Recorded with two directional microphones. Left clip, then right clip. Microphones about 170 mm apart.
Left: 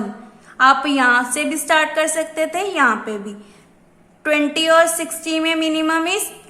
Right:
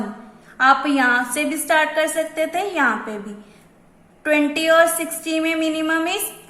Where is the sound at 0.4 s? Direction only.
15° left (ahead or behind).